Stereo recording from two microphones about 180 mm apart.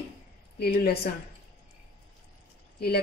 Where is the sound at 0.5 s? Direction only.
60° left (ahead or behind).